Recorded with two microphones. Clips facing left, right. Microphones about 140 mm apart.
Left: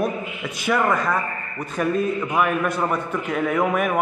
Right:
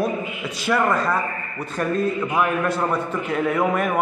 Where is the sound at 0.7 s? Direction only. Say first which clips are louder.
Right 1 dB; centre (ahead or behind).